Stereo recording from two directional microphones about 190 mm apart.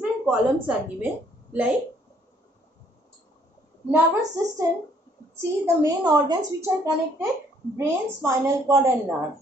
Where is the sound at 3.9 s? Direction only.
15° right (ahead or behind).